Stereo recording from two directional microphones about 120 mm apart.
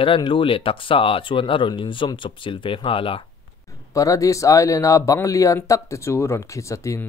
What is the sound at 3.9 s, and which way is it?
Speech, 30° left (ahead or behind).